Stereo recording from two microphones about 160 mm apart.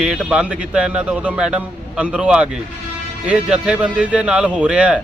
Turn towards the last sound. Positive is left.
turn(degrees=-5)  # may be behind; listen again after turning